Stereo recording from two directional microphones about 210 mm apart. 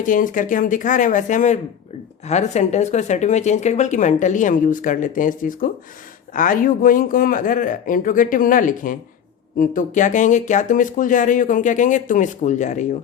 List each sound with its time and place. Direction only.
0.0 s speech: 40° left (ahead or behind)